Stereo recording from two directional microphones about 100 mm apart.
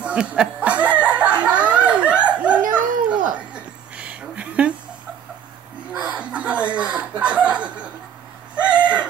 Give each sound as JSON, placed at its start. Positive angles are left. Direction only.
{"t": 0.0, "sound": "snicker", "side_deg": -10}
{"t": 1.0, "sound": "a sound", "side_deg": -15}
{"t": 6.0, "sound": "chuckle", "side_deg": -10}
{"t": 8.7, "sound": "chicken", "side_deg": -10}